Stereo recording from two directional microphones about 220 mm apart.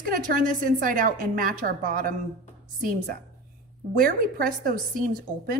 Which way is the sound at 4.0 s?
40° right (ahead or behind).